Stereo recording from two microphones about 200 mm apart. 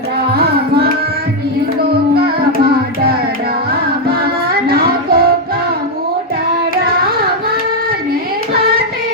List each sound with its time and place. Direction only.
4.7 s music: 50° right (ahead or behind)